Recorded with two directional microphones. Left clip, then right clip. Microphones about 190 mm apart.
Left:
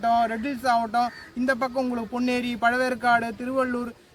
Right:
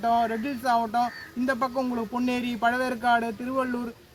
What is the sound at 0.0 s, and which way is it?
Speech, 15° left (ahead or behind).